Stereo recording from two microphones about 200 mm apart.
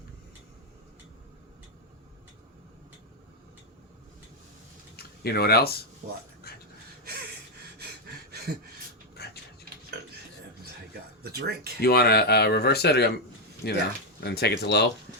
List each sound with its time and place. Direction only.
4.9 s speech: 50° left (ahead or behind)
6.0 s speech: 40° right (ahead or behind)
6.4 s a sound: 50° left (ahead or behind)
9.1 s a sound: 55° left (ahead or behind)
11.2 s speech: 55° right (ahead or behind)
11.8 s speech: 50° left (ahead or behind)